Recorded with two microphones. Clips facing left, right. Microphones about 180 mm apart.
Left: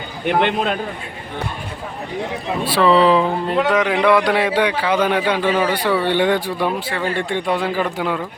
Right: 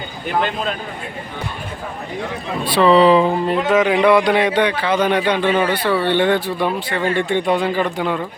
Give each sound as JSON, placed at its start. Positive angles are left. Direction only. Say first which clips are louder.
{"t": 0.3, "sound": "a man's voice", "louder": "left 3 dB", "side_deg": 65}
{"t": 2.6, "sound": "a man's voice", "louder": "right 2 dB", "side_deg": 0}